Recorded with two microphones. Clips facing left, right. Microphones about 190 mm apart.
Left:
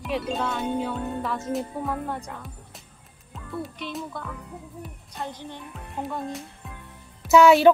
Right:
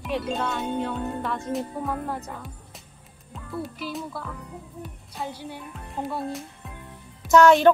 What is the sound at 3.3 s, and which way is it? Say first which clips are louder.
Speech: right 1 dB; centre (ahead or behind).